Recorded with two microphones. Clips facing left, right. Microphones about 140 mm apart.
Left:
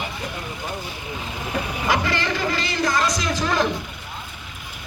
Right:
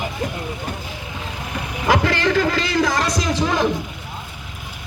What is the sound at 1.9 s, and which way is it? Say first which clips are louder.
Speech: right 6 dB; 90° right.